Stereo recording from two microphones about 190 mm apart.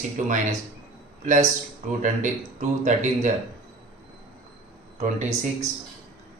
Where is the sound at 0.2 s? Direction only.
40° right (ahead or behind).